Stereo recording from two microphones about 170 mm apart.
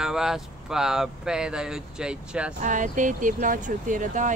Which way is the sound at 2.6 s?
50° right (ahead or behind).